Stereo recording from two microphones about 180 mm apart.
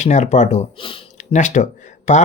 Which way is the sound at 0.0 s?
40° left (ahead or behind).